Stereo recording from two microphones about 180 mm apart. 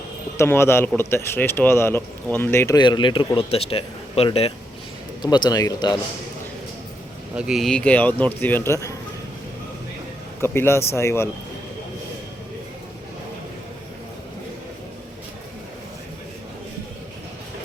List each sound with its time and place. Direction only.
0.3 s a man's voice: 15° left (ahead or behind)
7.3 s a man's voice: 5° right (ahead or behind); by 9.0 s 15° left (ahead or behind)
10.4 s a man's voice: 15° left (ahead or behind)